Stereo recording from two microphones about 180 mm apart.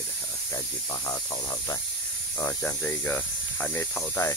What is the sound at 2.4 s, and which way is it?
Speech, 15° left (ahead or behind).